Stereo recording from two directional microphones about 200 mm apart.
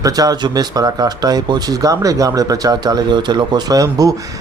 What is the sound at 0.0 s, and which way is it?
A man's voice, 20° right (ahead or behind).